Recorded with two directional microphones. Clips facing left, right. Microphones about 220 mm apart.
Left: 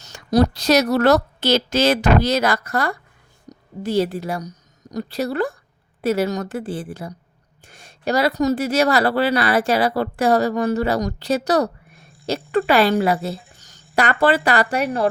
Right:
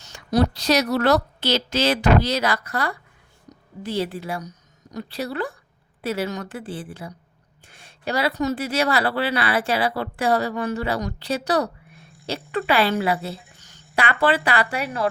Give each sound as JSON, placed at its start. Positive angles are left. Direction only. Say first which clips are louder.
{"t": 0.0, "sound": "speech", "louder": "left 3 dB", "side_deg": 40}
{"t": 3.5, "sound": "a sound", "louder": "left 4 dB", "side_deg": 40}
{"t": 3.8, "sound": "a woman's voice", "louder": "left 6 dB", "side_deg": 45}